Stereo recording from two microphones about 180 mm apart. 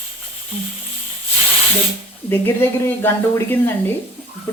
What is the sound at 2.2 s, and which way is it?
Speech, 10° left (ahead or behind).